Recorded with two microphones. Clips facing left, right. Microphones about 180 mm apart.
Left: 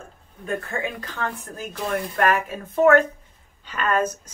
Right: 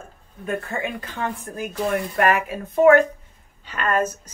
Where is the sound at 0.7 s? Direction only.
20° right (ahead or behind).